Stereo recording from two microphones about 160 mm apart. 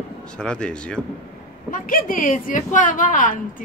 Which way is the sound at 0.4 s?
5° left (ahead or behind).